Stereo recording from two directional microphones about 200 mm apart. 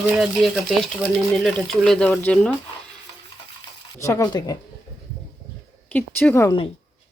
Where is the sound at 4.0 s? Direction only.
15° left (ahead or behind).